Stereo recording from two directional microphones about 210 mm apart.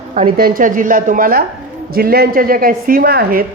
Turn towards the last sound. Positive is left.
turn(degrees=-45)  # may be behind; listen again after turning